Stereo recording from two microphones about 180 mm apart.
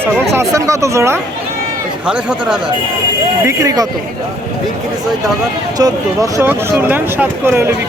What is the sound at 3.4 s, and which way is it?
Speech, 15° right (ahead or behind).